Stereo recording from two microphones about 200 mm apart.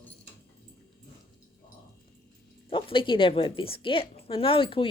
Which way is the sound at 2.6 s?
25° left (ahead or behind).